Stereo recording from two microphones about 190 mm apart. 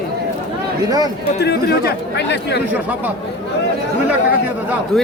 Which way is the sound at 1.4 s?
60° left (ahead or behind).